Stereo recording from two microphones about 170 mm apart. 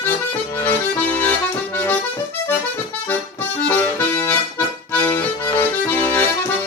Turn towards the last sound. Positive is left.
turn(degrees=10)  # may be behind; listen again after turning